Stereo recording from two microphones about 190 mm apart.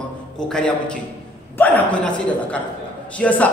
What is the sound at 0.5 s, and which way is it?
A man's voice, 5° left (ahead or behind).